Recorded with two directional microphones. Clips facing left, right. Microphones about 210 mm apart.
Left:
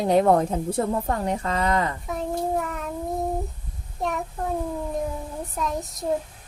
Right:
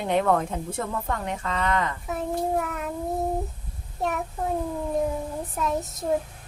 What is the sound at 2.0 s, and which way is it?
Child singing, centre (ahead or behind).